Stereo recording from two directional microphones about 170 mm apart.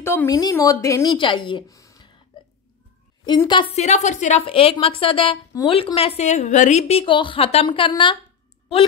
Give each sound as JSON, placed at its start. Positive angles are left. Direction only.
{"t": 0.0, "sound": "speech", "side_deg": 15}
{"t": 3.3, "sound": "speech", "side_deg": 25}
{"t": 3.7, "sound": "a woman's voice", "side_deg": 45}